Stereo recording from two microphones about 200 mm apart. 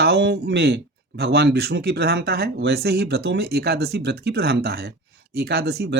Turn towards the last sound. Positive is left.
turn(degrees=-50)  # may be behind; listen again after turning